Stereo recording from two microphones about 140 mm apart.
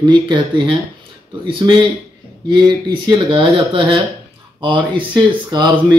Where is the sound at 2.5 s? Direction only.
35° right (ahead or behind).